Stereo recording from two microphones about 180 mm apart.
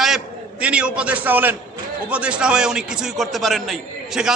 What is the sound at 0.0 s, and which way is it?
A man's voice, 5° right (ahead or behind).